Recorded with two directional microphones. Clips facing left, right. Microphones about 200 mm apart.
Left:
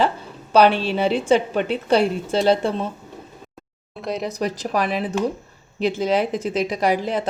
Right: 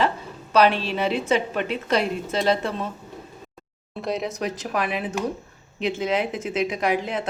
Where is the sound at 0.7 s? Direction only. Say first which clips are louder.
Left 4 dB; centre (ahead or behind).